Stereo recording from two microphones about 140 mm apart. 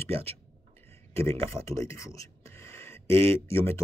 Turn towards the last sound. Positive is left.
turn(degrees=15)  # may be behind; listen again after turning